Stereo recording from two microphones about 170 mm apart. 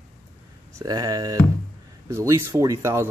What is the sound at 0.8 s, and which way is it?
Speech, 20° right (ahead or behind).